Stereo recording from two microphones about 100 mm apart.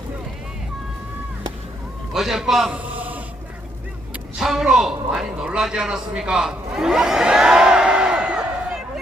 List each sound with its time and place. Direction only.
2.1 s a man's voice: 5° right (ahead or behind)
2.7 s a sound: 15° right (ahead or behind)
4.4 s a man's voice: 5° right (ahead or behind)